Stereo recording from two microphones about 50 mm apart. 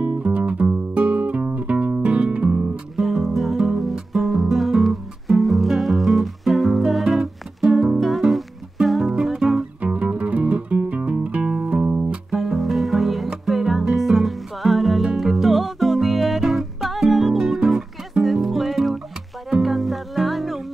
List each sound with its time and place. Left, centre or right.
0.0 s music: right
3.0 s music: centre
8.0 s music: centre
9.8 s music: right
12.3 s music: centre